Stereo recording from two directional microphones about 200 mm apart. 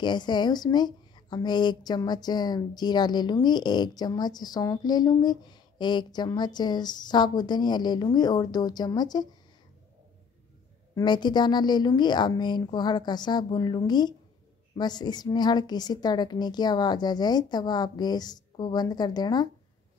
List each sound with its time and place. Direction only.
0.0 s speech: 20° left (ahead or behind)
11.0 s speech: 20° left (ahead or behind)